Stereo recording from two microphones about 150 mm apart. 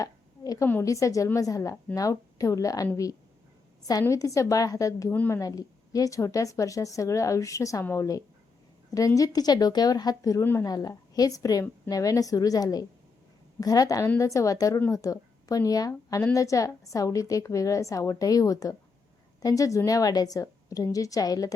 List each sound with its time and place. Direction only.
0.0 s a sound: 25° left (ahead or behind)
0.7 s a woman's voice: 20° left (ahead or behind)
5.1 s a woman's voice: 10° left (ahead or behind)
5.4 s a woman's voice: 25° left (ahead or behind)